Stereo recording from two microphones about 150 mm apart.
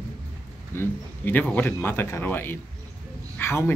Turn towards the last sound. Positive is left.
turn(degrees=15)  # may be behind; listen again after turning